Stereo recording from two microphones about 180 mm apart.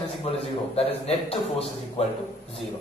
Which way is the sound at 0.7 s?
35° left (ahead or behind).